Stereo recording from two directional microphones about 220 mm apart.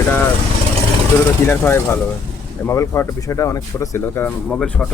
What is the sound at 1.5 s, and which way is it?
Speech, 10° left (ahead or behind).